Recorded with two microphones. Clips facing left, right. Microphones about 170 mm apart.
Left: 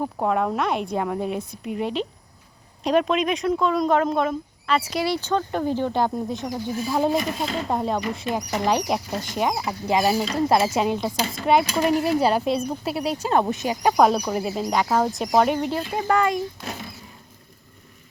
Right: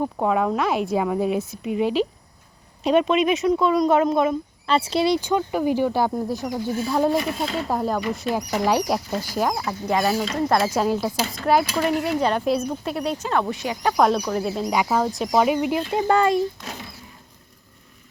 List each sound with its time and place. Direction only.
0.0 s speech: centre (ahead or behind)
4.6 s speech: 30° right (ahead or behind); by 10.9 s 5° left (ahead or behind)
10.9 s speech: 5° right (ahead or behind)
13.3 s speech: 20° left (ahead or behind)
13.8 s speech: 5° left (ahead or behind)
15.9 s speech: 25° right (ahead or behind)